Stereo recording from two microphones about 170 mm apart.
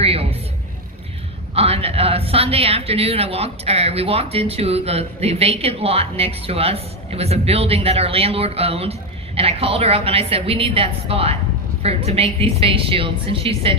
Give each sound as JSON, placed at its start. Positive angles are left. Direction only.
{"t": 0.0, "sound": "a woman's voice", "side_deg": -35}
{"t": 1.5, "sound": "a woman's voice", "side_deg": -35}